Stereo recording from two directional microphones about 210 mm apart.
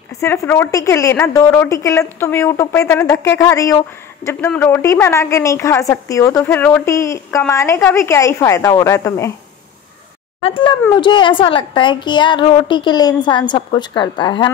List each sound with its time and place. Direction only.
0.2 s a woman's voice: 10° left (ahead or behind)
10.4 s a woman's voice: 25° left (ahead or behind)